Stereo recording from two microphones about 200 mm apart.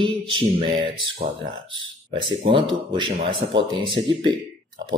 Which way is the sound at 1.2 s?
35° right (ahead or behind).